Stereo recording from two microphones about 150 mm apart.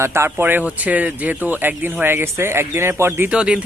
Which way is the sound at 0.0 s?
15° right (ahead or behind).